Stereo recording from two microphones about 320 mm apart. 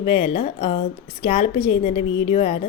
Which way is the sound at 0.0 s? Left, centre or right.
Centre.